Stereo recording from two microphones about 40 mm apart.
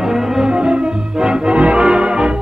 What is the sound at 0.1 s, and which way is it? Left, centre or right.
Brass instrument, centre.